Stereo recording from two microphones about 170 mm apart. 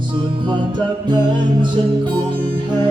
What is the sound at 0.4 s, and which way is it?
Music, 30° right (ahead or behind).